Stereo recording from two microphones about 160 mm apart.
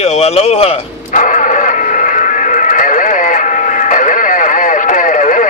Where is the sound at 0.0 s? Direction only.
40° left (ahead or behind).